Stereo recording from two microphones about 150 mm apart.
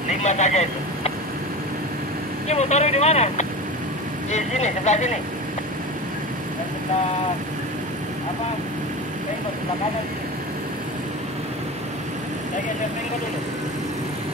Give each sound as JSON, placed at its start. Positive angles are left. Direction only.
{"t": 0.1, "sound": "speech", "side_deg": 50}
{"t": 2.4, "sound": "speech", "side_deg": 50}